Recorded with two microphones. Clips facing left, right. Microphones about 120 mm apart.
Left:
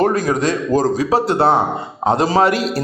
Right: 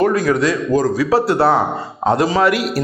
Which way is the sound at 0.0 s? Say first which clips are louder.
Right 1 dB; 35° left (ahead or behind).